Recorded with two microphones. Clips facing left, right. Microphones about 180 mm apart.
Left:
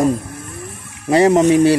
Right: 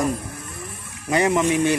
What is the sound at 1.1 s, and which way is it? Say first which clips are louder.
Speech: left 8 dB; 35° left (ahead or behind).